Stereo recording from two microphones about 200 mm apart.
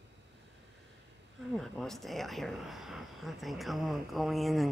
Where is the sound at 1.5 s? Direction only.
Centre (ahead or behind).